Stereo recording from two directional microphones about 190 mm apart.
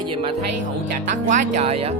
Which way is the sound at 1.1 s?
40° right (ahead or behind).